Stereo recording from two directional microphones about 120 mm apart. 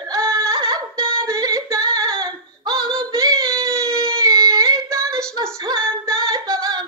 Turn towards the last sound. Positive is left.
turn(degrees=-30)  # may be behind; listen again after turning